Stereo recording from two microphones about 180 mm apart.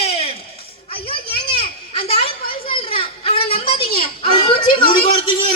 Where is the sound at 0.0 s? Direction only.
35° left (ahead or behind).